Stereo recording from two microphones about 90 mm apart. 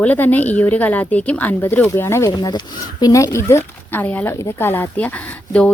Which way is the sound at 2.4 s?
50° left (ahead or behind).